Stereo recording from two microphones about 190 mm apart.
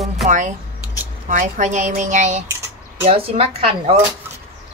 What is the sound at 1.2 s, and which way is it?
Speech, 40° right (ahead or behind).